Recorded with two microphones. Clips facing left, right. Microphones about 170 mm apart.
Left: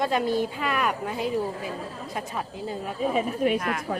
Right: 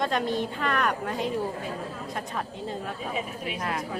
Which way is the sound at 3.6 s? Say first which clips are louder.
Left 1 dB; 30° right (ahead or behind).